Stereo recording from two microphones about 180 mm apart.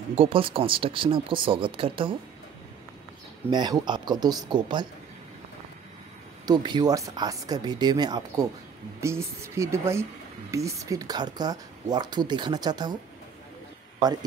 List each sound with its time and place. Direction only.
0.1 s speech: 30° right (ahead or behind)
3.4 s speech: 25° right (ahead or behind)
6.4 s a woman's voice: 25° right (ahead or behind)
14.0 s speech: 20° right (ahead or behind)